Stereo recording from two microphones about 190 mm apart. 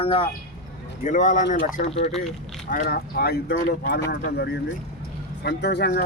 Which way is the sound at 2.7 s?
50° left (ahead or behind).